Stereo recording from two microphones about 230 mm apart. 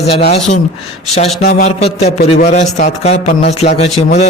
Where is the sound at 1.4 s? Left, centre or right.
Left.